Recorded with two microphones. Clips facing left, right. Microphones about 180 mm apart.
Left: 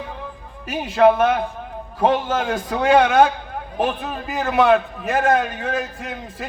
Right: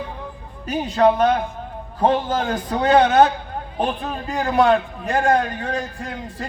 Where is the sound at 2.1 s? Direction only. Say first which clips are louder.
Even; 30° right (ahead or behind).